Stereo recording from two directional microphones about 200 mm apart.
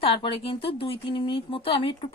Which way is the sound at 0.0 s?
25° left (ahead or behind).